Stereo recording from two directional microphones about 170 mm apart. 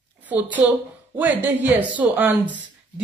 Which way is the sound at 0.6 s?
10° right (ahead or behind).